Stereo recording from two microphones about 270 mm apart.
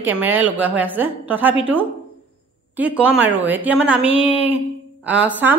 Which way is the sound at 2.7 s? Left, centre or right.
Centre.